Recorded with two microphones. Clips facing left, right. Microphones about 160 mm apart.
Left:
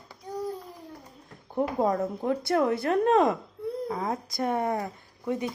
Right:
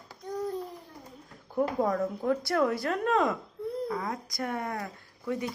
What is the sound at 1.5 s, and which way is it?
Speech, 30° left (ahead or behind).